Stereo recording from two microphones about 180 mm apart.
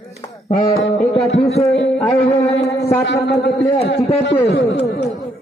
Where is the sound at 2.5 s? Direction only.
35° left (ahead or behind).